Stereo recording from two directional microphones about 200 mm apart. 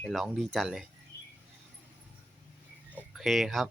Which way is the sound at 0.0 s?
Centre (ahead or behind).